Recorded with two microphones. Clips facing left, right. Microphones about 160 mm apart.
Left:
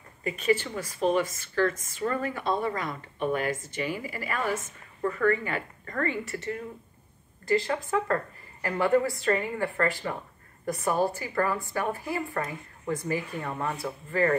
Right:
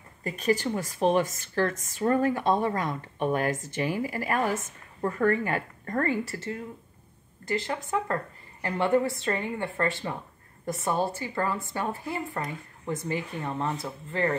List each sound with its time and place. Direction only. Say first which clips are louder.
0.2 s a woman's voice: even; 40° right (ahead or behind)
7.4 s a woman's voice: left 4 dB; 20° right (ahead or behind)